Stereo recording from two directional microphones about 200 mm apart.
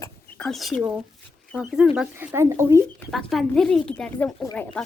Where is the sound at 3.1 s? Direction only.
Centre (ahead or behind).